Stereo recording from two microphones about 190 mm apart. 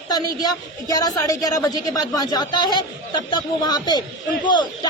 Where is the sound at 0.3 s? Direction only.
20° left (ahead or behind).